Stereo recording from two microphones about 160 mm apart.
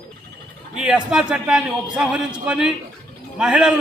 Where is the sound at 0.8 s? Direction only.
5° right (ahead or behind).